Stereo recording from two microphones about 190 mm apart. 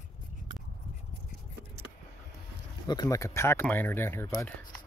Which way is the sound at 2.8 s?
20° left (ahead or behind).